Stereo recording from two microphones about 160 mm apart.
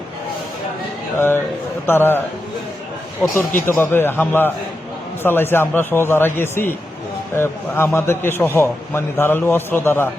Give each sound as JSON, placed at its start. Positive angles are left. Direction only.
{"t": 1.9, "sound": "a man's voice", "side_deg": 15}